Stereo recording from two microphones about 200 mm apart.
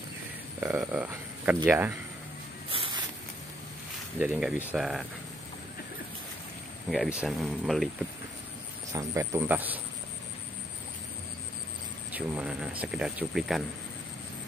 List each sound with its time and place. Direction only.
0.6 s speech: 5° right (ahead or behind)
2.7 s a sound: 25° right (ahead or behind)
4.2 s speech: 5° right (ahead or behind)
6.9 s speech: 5° right (ahead or behind)
8.9 s speech: 15° right (ahead or behind)
12.1 s speech: 5° right (ahead or behind)